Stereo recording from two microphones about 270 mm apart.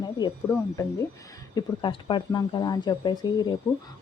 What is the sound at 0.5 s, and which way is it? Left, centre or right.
Speech, centre.